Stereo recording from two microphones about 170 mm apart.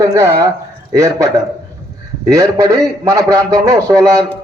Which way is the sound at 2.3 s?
20° right (ahead or behind).